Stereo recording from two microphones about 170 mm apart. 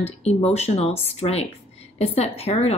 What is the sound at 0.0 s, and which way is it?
Speech, 40° left (ahead or behind).